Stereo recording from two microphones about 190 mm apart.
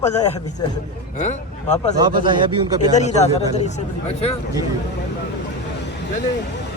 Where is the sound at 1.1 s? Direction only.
40° left (ahead or behind).